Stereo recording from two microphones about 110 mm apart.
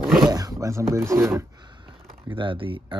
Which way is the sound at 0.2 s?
35° right (ahead or behind).